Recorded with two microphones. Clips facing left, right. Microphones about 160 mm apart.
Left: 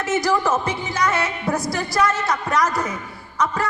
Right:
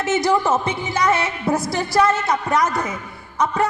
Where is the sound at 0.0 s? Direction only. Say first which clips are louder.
Right 2 dB; 25° right (ahead or behind).